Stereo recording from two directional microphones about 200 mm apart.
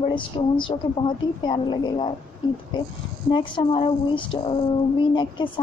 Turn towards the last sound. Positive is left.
turn(degrees=25)  # may be behind; listen again after turning